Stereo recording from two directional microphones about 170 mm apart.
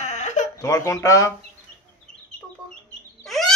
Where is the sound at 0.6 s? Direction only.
20° left (ahead or behind).